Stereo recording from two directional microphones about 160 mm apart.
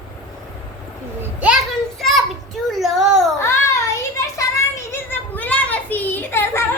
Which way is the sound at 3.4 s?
15° left (ahead or behind).